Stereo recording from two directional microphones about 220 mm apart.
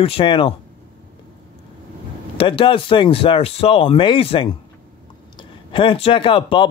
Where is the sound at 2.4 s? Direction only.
25° left (ahead or behind).